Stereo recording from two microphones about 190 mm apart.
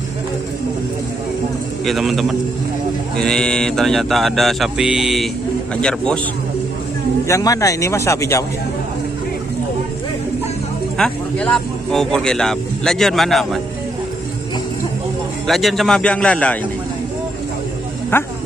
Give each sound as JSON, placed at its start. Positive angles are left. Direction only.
{"t": 1.9, "sound": "speech", "side_deg": 0}
{"t": 7.2, "sound": "speech", "side_deg": 15}
{"t": 11.0, "sound": "speech", "side_deg": 5}
{"t": 15.4, "sound": "speech", "side_deg": 0}
{"t": 18.1, "sound": "speech", "side_deg": 10}